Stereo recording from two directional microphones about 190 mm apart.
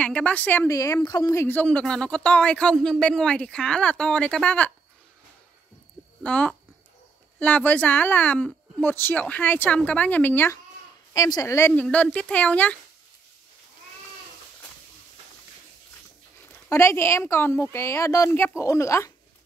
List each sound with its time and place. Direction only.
0.0 s a woman's voice: 5° left (ahead or behind)
6.2 s a woman's voice: 5° left (ahead or behind)
16.6 s a woman's voice: 15° left (ahead or behind)